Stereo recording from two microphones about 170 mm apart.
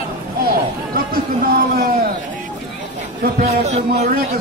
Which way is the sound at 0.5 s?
60° right (ahead or behind).